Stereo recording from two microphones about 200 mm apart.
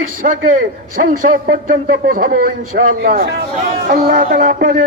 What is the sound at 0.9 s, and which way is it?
Speech, 45° right (ahead or behind).